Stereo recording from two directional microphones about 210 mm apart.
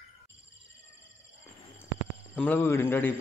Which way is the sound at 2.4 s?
10° left (ahead or behind).